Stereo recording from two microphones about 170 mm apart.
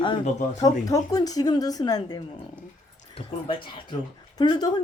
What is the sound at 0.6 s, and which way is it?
Speech, 20° left (ahead or behind).